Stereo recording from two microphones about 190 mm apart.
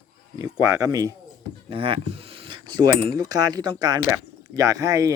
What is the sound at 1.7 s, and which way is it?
Speech, 30° right (ahead or behind).